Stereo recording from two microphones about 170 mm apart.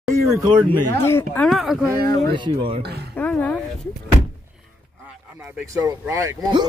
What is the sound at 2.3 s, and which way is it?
Speech, 30° right (ahead or behind).